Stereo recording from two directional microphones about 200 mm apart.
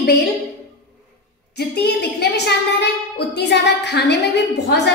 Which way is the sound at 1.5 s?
55° left (ahead or behind).